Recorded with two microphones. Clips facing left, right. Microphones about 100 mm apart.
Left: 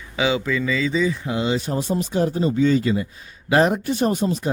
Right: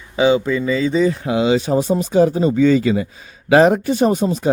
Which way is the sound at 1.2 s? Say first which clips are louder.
Right 6 dB; 90° right.